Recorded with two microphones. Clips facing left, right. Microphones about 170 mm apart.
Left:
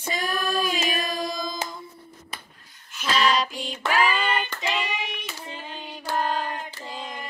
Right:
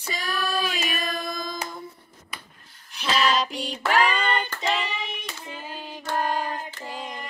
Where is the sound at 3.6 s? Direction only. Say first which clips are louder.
Right 1 dB; 35° right (ahead or behind).